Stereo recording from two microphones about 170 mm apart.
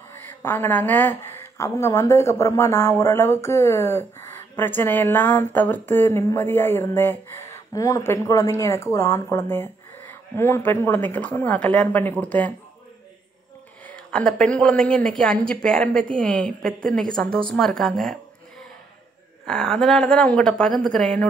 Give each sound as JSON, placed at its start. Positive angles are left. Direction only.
{"t": 0.1, "sound": "a woman's voice", "side_deg": 15}
{"t": 13.8, "sound": "a woman's voice", "side_deg": 5}
{"t": 19.4, "sound": "a woman's voice", "side_deg": 5}